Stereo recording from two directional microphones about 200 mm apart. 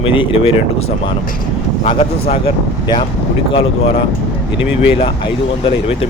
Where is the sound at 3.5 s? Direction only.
30° left (ahead or behind).